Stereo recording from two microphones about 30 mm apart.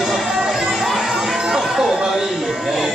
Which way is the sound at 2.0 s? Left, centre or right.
Centre.